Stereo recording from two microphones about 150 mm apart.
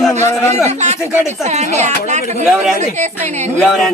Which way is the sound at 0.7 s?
50° right (ahead or behind).